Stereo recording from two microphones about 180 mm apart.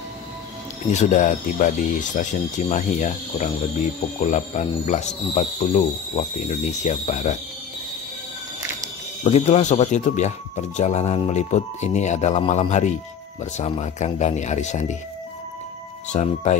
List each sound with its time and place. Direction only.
0.9 s speech: 45° left (ahead or behind)
9.2 s speech: 40° left (ahead or behind)
16.1 s speech: 40° left (ahead or behind)